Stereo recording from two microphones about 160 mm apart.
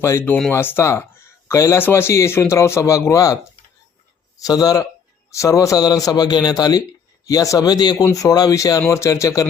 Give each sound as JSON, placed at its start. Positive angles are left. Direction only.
{"t": 0.0, "sound": "speech", "side_deg": 15}
{"t": 4.4, "sound": "a man's voice", "side_deg": 25}